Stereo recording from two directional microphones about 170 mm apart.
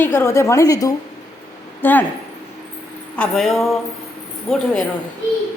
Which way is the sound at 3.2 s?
Centre (ahead or behind).